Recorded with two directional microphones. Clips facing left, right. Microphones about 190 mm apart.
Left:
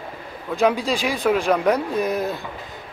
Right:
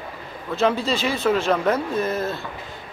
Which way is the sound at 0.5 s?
15° left (ahead or behind).